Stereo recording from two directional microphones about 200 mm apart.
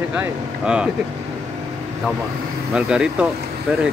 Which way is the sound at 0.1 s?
5° right (ahead or behind).